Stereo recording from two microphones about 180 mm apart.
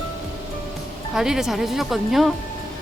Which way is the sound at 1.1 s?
5° right (ahead or behind).